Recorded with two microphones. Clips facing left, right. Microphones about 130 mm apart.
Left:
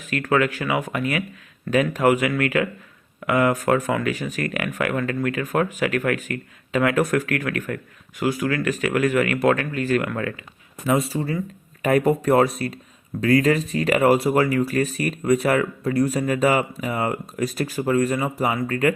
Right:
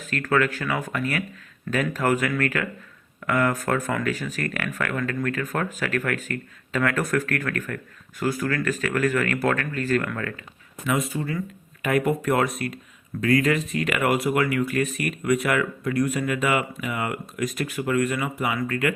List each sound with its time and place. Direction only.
0.1 s speech: 15° left (ahead or behind)
10.8 s speech: 30° left (ahead or behind)